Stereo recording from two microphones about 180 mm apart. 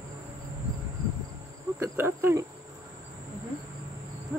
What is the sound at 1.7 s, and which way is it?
Insect, 15° right (ahead or behind).